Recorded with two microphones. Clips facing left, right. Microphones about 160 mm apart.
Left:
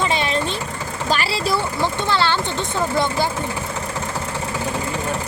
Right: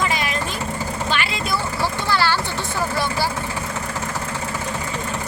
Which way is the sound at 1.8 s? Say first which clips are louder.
Right 1 dB; 20° left (ahead or behind).